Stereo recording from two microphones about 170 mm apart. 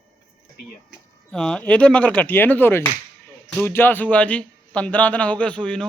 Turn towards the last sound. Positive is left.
turn(degrees=5)  # may be behind; listen again after turning